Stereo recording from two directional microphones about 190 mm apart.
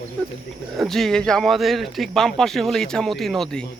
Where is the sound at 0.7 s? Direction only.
Centre (ahead or behind).